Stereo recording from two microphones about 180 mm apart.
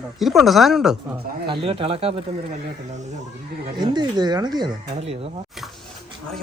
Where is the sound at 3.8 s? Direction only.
25° right (ahead or behind).